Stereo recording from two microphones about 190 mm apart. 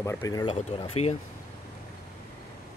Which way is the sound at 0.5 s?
30° left (ahead or behind).